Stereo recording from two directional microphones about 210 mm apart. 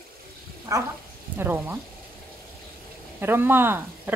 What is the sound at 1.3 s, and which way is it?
Speech, 10° right (ahead or behind).